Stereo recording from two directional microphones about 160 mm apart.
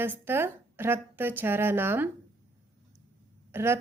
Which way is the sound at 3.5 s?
15° right (ahead or behind).